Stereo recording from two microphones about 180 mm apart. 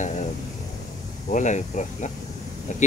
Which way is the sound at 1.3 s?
45° left (ahead or behind).